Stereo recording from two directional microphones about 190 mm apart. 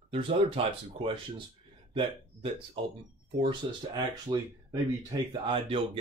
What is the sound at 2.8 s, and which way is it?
Speech, 30° right (ahead or behind).